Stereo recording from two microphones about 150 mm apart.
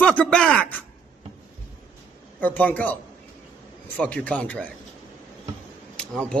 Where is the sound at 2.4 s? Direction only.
10° left (ahead or behind).